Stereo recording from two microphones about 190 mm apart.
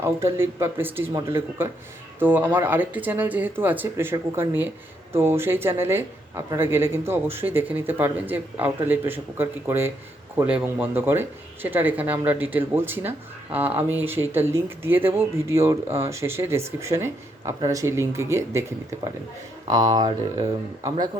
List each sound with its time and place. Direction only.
0.0 s speech: 15° right (ahead or behind)
20.8 s a man's voice: 30° right (ahead or behind)